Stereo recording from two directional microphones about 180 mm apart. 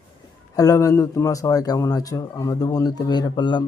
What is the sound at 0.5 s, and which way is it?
A man's voice, 20° left (ahead or behind).